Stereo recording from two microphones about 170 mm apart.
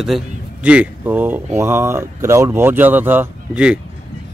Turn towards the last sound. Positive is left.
turn(degrees=-5)  # may be behind; listen again after turning